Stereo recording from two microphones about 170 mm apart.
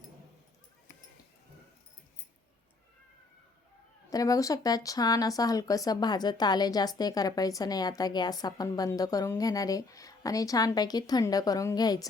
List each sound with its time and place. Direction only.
4.1 s speech: 20° left (ahead or behind)